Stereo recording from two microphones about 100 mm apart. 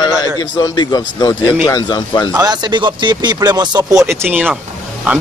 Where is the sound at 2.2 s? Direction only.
40° right (ahead or behind).